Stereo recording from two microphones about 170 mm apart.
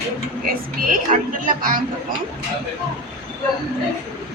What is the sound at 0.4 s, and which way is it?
Speech, 60° right (ahead or behind).